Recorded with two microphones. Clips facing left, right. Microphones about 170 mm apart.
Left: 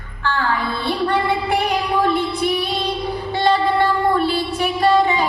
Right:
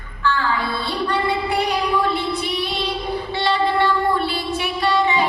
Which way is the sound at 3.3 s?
40° left (ahead or behind).